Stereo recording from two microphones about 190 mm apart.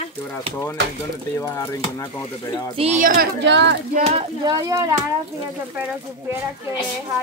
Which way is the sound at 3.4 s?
65° right (ahead or behind).